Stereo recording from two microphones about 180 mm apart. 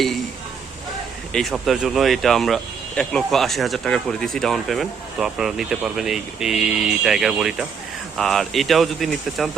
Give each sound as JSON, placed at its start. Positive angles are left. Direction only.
{"t": 1.3, "sound": "speech", "side_deg": 0}